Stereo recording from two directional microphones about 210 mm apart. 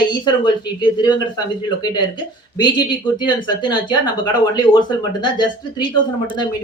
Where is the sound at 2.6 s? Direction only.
20° left (ahead or behind).